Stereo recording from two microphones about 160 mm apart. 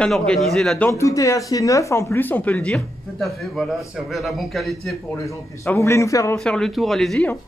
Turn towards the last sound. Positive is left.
turn(degrees=0)  # may be behind; listen again after turning